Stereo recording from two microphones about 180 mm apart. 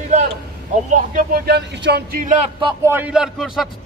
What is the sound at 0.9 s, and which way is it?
Speech, 50° right (ahead or behind).